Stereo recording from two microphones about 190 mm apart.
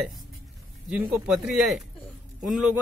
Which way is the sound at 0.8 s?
5° right (ahead or behind).